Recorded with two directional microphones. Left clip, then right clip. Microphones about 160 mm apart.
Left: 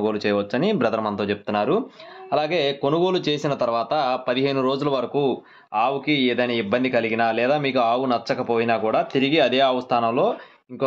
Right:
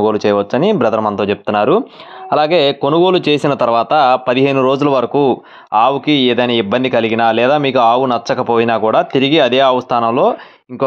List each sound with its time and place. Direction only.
0.0 s speech: 40° right (ahead or behind)